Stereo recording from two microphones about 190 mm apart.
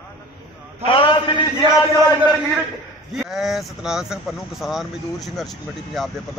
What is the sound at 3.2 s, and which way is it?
Speech, centre (ahead or behind).